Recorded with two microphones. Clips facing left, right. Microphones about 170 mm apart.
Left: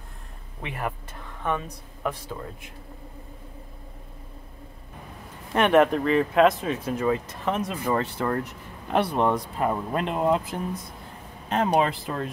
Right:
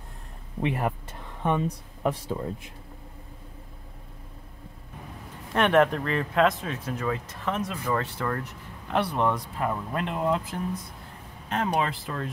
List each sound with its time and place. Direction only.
0.6 s speech: 30° right (ahead or behind)
5.5 s speech: 10° left (ahead or behind)